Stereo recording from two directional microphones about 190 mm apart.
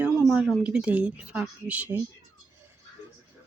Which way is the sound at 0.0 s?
5° right (ahead or behind).